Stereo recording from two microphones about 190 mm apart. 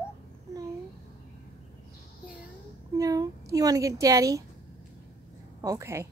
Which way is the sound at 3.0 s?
20° right (ahead or behind).